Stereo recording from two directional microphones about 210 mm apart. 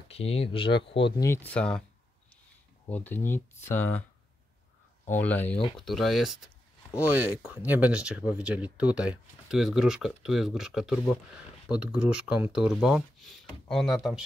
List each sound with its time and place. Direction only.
0.1 s speech: 30° left (ahead or behind)
0.7 s speech: 55° left (ahead or behind)
1.0 s speech: 15° left (ahead or behind)
2.9 s speech: 10° left (ahead or behind)
5.2 s speech: 10° left (ahead or behind)